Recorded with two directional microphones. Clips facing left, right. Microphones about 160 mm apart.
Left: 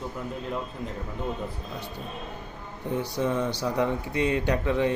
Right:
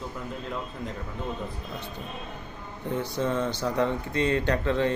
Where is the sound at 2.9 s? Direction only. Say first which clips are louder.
Left 1 dB; 15° left (ahead or behind).